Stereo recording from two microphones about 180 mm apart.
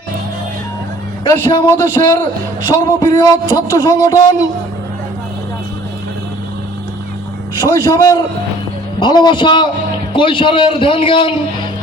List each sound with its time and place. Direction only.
1.2 s a man's voice: 25° left (ahead or behind)
7.6 s speech: 25° left (ahead or behind)